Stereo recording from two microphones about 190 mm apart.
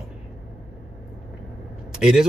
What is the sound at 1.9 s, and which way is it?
Speech, 5° right (ahead or behind).